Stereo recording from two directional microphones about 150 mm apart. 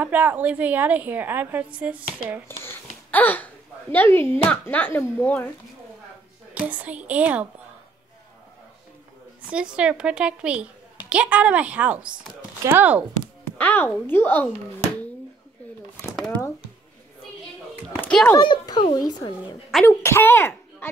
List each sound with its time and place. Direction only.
0.0 s a child's voice: 10° right (ahead or behind)
3.1 s speech: 10° left (ahead or behind)
6.6 s a child's voice: 10° right (ahead or behind)
9.5 s a child's voice: 5° right (ahead or behind)
13.6 s speech: 10° left (ahead or behind)
18.0 s a child's voice: 10° left (ahead or behind)
18.3 s a child's voice: 30° left (ahead or behind)
19.9 s speech: 20° left (ahead or behind)